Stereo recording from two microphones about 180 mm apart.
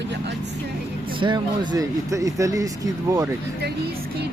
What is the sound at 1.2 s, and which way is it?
Speech, 25° right (ahead or behind).